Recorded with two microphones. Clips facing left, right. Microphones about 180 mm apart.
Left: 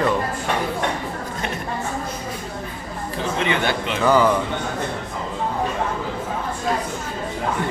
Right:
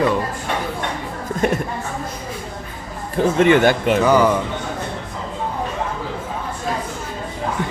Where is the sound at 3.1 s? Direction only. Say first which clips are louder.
Right 9 dB; 50° right (ahead or behind).